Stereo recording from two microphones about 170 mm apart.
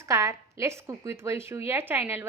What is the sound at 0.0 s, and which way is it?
Speech, 20° right (ahead or behind).